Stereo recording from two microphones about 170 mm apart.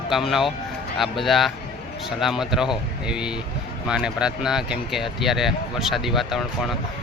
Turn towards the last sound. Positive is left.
turn(degrees=0)  # may be behind; listen again after turning